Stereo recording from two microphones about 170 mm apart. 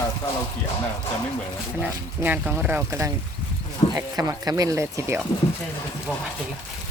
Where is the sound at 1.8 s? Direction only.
10° right (ahead or behind).